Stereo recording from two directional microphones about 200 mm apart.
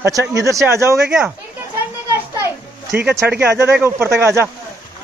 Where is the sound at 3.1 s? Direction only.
5° right (ahead or behind).